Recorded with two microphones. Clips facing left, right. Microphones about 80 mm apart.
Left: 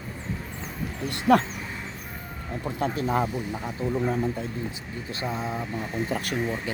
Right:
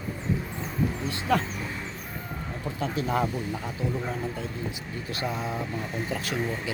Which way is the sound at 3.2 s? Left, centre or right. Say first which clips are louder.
Even; centre.